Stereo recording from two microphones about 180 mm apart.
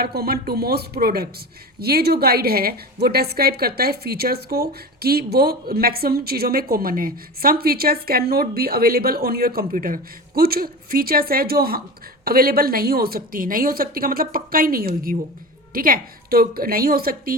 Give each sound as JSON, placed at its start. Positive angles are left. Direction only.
{"t": 0.0, "sound": "a woman's voice", "side_deg": -60}